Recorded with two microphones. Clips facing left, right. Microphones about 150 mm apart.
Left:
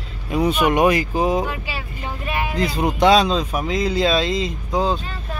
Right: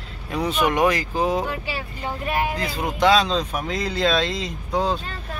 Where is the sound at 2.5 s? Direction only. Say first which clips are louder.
Left 5 dB; 20° left (ahead or behind).